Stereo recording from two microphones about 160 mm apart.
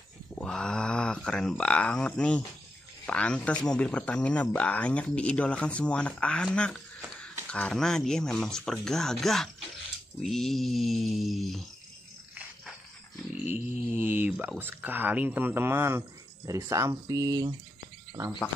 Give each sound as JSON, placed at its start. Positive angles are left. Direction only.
{"t": 0.4, "sound": "speech", "side_deg": 5}
{"t": 13.4, "sound": "speech", "side_deg": -15}